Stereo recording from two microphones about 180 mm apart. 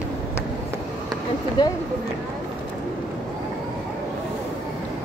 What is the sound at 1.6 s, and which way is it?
Speech, 20° left (ahead or behind).